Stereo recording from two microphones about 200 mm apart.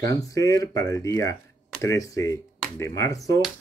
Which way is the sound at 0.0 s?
15° left (ahead or behind).